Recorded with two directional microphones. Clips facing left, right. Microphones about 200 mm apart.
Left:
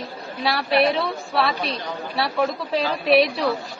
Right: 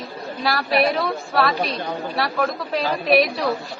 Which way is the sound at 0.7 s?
30° left (ahead or behind).